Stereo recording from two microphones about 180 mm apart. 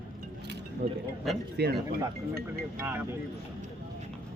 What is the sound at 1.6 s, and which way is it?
Speech, 65° right (ahead or behind).